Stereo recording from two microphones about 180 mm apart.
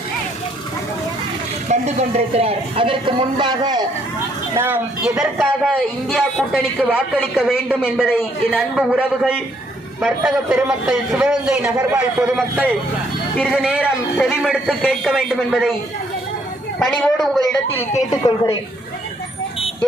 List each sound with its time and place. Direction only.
1.6 s speech: 40° right (ahead or behind); by 3.8 s 20° right (ahead or behind)
4.5 s a man's voice: 10° right (ahead or behind)
16.8 s a man's voice: 5° left (ahead or behind)
18.1 s speech: 20° left (ahead or behind)